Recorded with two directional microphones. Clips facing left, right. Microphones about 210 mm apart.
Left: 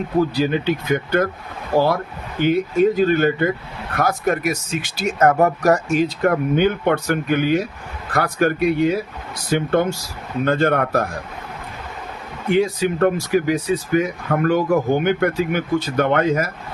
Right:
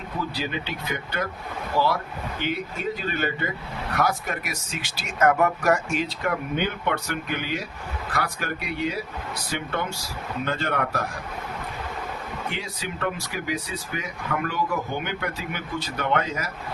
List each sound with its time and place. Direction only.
0.2 s speech: 45° left (ahead or behind)
12.5 s speech: 50° left (ahead or behind)